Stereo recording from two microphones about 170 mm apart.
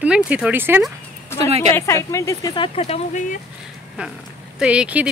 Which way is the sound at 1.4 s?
35° right (ahead or behind).